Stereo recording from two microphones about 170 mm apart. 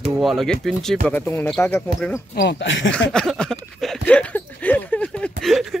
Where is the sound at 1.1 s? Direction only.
15° left (ahead or behind).